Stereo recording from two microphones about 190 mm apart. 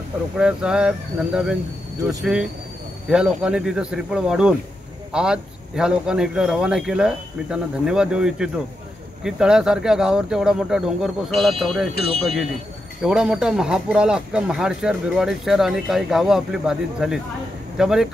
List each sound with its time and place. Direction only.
0.4 s speech: 5° right (ahead or behind)